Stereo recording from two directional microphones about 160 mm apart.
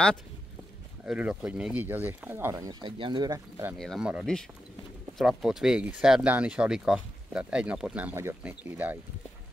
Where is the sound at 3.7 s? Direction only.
Centre (ahead or behind).